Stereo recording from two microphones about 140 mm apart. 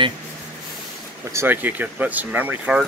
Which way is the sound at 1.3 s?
15° right (ahead or behind).